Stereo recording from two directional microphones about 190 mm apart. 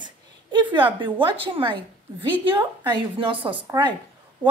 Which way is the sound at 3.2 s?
25° right (ahead or behind).